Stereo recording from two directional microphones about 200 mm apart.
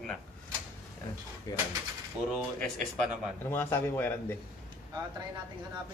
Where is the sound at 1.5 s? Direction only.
20° left (ahead or behind).